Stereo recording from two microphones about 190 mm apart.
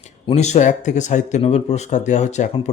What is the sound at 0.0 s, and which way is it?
Speech, 35° left (ahead or behind).